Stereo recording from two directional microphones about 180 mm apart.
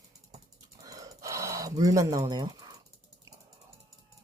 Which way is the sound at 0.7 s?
20° right (ahead or behind).